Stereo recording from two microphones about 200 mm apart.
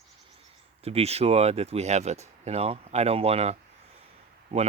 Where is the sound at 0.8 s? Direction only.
30° right (ahead or behind).